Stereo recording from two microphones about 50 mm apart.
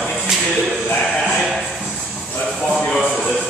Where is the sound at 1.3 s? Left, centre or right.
Centre.